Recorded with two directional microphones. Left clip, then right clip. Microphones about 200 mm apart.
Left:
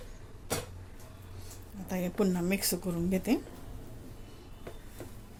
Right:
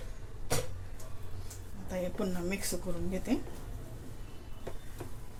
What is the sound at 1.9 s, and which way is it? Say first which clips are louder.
Speech: left 4 dB; 50° left (ahead or behind).